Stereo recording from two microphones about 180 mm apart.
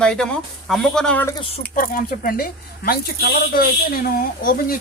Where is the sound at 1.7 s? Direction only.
50° left (ahead or behind).